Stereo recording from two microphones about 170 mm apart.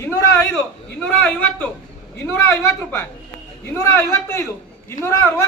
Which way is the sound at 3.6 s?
15° left (ahead or behind).